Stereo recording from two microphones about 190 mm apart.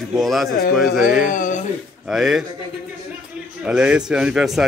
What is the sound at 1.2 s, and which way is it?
Speech, 45° left (ahead or behind).